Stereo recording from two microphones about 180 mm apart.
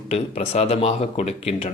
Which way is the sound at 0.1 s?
35° left (ahead or behind).